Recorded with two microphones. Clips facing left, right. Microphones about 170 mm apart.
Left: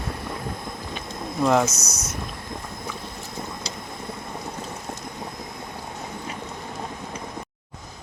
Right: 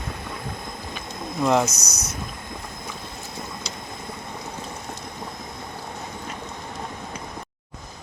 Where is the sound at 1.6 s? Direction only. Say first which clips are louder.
Left 1 dB; 25° left (ahead or behind).